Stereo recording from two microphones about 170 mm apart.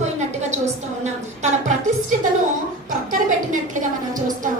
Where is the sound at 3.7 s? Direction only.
50° right (ahead or behind).